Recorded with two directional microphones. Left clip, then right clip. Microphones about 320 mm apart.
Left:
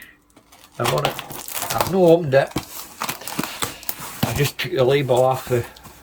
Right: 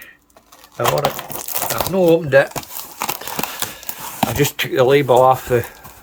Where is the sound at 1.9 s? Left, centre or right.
Centre.